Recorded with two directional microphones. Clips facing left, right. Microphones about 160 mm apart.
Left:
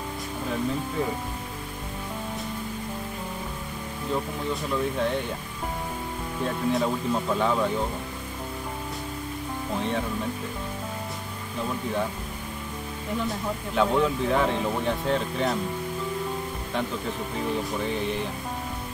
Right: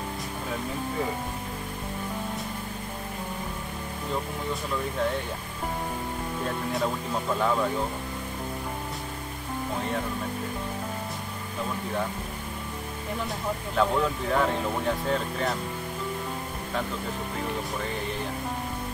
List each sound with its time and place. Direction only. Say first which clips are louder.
6.4 s speech: left 4 dB; centre (ahead or behind)
13.7 s speech: left 3 dB; centre (ahead or behind)